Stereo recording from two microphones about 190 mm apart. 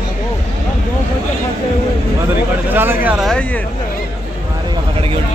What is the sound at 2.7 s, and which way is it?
Vehicle, 10° right (ahead or behind).